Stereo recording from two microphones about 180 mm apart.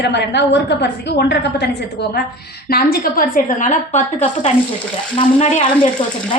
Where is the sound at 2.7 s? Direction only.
55° left (ahead or behind); by 4.2 s 40° left (ahead or behind).